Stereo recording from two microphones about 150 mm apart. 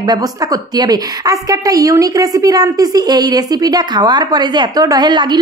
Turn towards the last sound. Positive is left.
turn(degrees=-30)  # may be behind; listen again after turning